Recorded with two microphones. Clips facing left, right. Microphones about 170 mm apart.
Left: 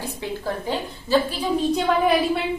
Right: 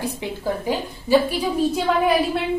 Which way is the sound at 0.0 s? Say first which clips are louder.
Right 2 dB; 15° right (ahead or behind).